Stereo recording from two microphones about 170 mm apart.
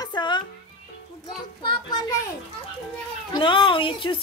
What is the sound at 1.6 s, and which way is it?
Speech, 25° left (ahead or behind).